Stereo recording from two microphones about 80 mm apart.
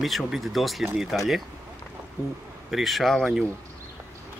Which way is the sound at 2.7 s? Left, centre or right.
Centre.